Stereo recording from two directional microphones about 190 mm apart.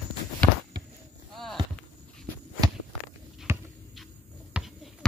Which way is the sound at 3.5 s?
15° right (ahead or behind).